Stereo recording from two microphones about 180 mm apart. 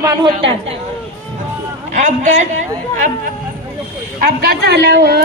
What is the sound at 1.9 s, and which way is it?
Speech, 40° right (ahead or behind).